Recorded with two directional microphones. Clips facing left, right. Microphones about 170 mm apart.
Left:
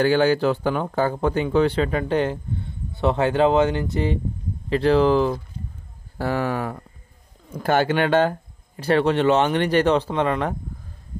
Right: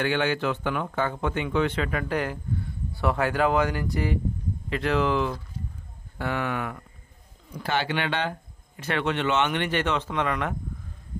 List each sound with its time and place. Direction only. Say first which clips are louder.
0.0 s speech: left 7 dB; 35° left (ahead or behind)
7.4 s speech: left 8 dB; 45° left (ahead or behind); by 10.5 s 30° left (ahead or behind)